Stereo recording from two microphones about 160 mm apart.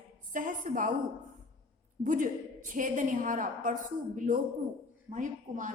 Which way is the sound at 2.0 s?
55° right (ahead or behind).